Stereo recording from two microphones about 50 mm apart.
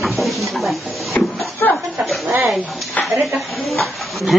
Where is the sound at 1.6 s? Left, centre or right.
Left.